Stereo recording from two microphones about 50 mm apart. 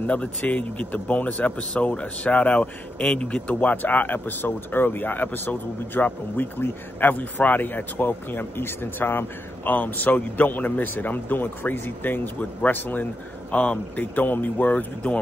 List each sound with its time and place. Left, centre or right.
0.0 s speech: left
9.7 s speech: left